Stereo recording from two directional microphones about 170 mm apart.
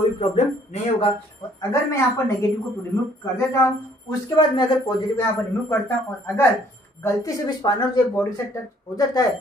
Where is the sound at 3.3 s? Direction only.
15° left (ahead or behind).